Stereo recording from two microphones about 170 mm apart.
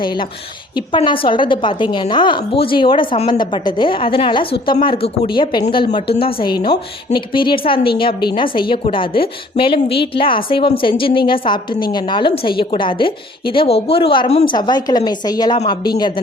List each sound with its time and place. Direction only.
0.9 s a woman's voice: 30° left (ahead or behind)